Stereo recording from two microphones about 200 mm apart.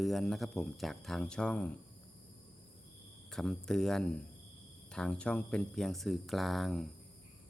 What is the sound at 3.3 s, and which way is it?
Speech, 5° left (ahead or behind).